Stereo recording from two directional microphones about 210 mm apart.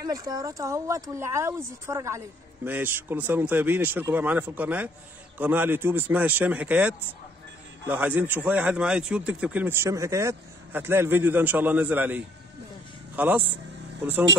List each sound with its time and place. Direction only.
0.0 s a man's voice: 15° right (ahead or behind)